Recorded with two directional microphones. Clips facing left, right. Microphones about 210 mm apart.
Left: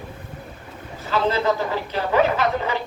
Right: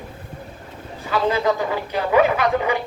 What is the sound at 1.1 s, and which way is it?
A man's voice, 15° right (ahead or behind).